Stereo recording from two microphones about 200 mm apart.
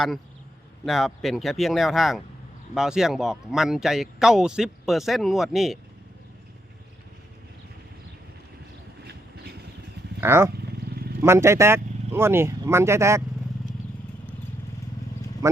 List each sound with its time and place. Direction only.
0.9 s speech: centre (ahead or behind)
10.2 s speech: 10° right (ahead or behind)
10.6 s vehicle: 50° right (ahead or behind)
11.2 s speech: 15° right (ahead or behind)